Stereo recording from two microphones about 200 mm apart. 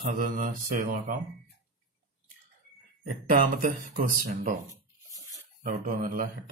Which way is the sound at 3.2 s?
40° right (ahead or behind).